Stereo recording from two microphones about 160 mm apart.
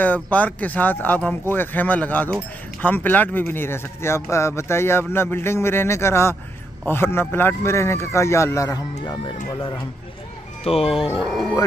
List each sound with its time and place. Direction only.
0.0 s speech: 10° left (ahead or behind)
9.0 s speech: 30° left (ahead or behind)
11.1 s music: centre (ahead or behind)